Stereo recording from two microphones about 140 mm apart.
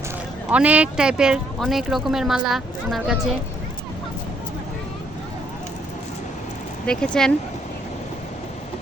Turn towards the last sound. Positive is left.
turn(degrees=5)  # may be behind; listen again after turning